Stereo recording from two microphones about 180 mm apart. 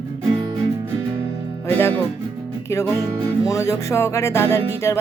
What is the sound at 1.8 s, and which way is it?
Speech, 10° left (ahead or behind).